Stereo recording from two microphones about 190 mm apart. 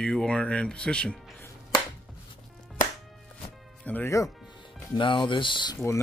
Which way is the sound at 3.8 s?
10° left (ahead or behind).